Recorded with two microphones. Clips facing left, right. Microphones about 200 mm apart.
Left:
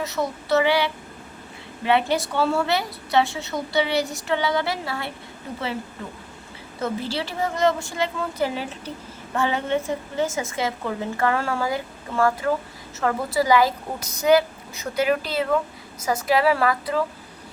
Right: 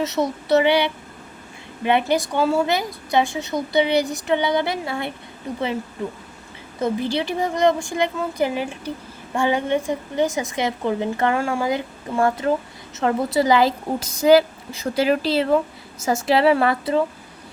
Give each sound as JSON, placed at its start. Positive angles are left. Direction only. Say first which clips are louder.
{"t": 0.0, "sound": "a woman's voice", "louder": "right 4 dB", "side_deg": -20}
{"t": 6.8, "sound": "a woman's voice", "louder": "right 5 dB", "side_deg": -15}